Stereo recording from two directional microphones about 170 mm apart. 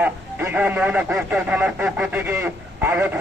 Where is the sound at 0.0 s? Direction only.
10° right (ahead or behind).